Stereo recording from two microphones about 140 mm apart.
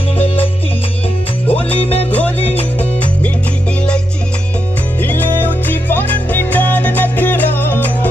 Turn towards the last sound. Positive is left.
turn(degrees=15)  # may be behind; listen again after turning